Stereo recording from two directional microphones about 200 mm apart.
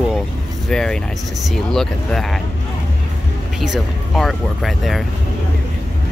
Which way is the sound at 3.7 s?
Centre (ahead or behind).